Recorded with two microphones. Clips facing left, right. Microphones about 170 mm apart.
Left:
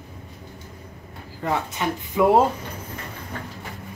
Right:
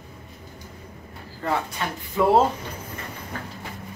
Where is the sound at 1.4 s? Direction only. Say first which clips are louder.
Left 2 dB; 15° left (ahead or behind).